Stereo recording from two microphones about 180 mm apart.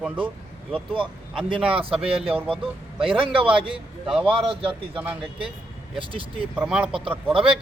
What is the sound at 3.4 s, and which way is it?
Speech, 30° right (ahead or behind).